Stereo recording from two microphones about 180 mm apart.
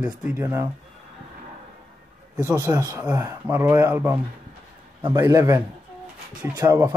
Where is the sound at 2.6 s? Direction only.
20° right (ahead or behind).